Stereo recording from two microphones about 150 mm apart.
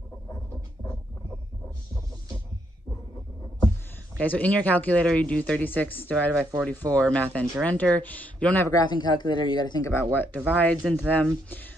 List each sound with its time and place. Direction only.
4.2 s speech: 10° left (ahead or behind)
8.6 s speech: 25° left (ahead or behind); by 11.6 s 10° left (ahead or behind)